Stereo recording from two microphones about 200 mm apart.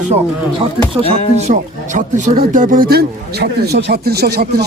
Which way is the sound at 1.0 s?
30° right (ahead or behind).